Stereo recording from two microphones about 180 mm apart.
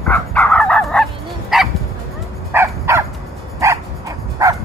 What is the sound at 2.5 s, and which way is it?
Crow, 15° right (ahead or behind).